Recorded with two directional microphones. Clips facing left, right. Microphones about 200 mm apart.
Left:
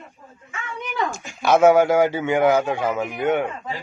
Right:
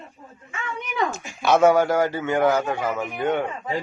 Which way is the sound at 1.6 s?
10° left (ahead or behind).